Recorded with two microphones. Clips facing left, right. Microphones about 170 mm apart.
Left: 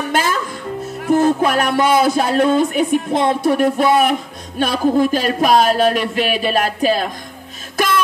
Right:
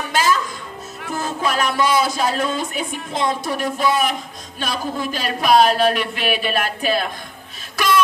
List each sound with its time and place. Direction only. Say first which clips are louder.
0.1 s music: right 1 dB; 55° left (ahead or behind)
1.0 s speech: left 10 dB; 50° left (ahead or behind)
7.7 s music: left 1 dB; 50° left (ahead or behind)